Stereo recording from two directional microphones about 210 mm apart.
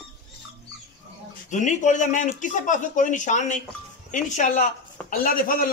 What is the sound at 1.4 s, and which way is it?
A man's voice, 35° left (ahead or behind).